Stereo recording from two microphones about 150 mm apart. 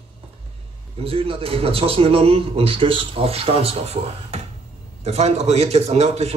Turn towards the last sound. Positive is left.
turn(degrees=-45)  # may be behind; listen again after turning